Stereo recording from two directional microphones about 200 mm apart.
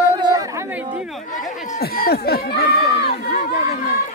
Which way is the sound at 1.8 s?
50° left (ahead or behind).